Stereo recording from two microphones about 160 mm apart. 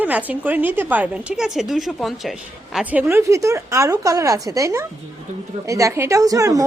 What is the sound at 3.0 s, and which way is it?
A woman's voice, 15° right (ahead or behind).